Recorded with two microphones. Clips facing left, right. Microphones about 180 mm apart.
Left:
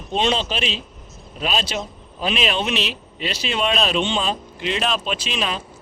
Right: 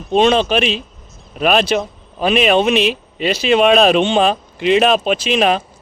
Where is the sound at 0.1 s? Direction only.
55° right (ahead or behind).